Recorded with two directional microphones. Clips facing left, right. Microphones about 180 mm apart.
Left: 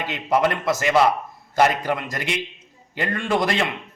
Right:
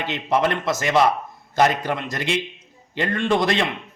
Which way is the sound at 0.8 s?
15° left (ahead or behind).